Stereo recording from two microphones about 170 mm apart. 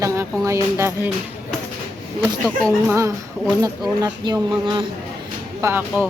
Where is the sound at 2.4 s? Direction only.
5° left (ahead or behind).